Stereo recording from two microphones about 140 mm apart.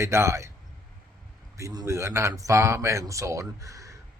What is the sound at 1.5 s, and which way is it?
Speech, 25° right (ahead or behind).